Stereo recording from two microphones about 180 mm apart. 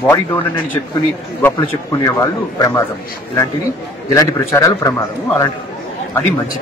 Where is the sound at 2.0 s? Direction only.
20° left (ahead or behind).